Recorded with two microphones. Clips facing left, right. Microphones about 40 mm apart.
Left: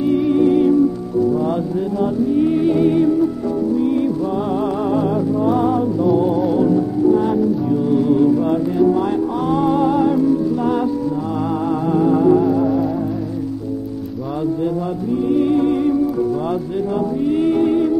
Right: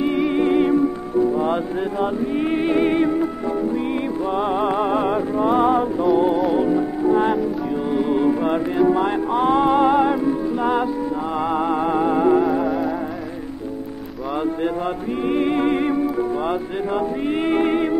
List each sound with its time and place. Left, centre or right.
0.0 s music: right
4.9 s music: right
11.9 s music: right
15.2 s music: right
17.3 s music: right